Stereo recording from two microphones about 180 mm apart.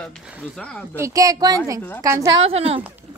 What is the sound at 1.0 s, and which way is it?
Speech, 20° right (ahead or behind).